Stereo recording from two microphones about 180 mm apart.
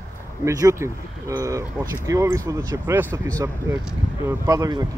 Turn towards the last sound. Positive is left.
turn(degrees=-20)  # may be behind; listen again after turning